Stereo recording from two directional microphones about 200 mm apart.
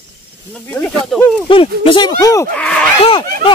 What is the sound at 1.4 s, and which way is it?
Speech, 25° left (ahead or behind).